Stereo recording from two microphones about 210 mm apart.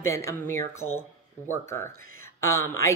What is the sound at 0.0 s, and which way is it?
Speech, 15° left (ahead or behind).